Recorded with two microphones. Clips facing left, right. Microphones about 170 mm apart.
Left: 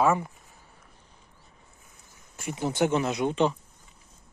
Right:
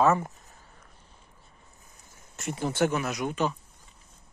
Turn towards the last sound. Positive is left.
turn(degrees=25)  # may be behind; listen again after turning